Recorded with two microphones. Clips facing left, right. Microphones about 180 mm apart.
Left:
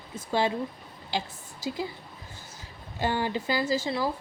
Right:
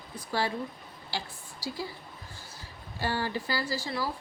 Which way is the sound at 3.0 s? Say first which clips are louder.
Left 3 dB; 20° left (ahead or behind).